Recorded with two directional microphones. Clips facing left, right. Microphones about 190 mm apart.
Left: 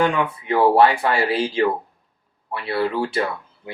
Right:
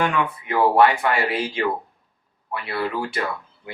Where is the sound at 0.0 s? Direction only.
30° left (ahead or behind).